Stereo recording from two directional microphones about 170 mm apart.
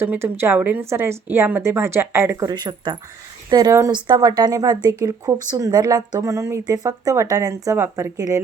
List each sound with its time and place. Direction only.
0.0 s a woman's voice: 15° right (ahead or behind)